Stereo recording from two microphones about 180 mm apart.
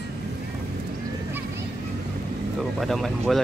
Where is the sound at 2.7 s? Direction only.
Centre (ahead or behind).